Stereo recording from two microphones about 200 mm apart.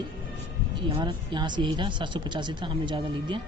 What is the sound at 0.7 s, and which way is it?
Speech, 25° right (ahead or behind).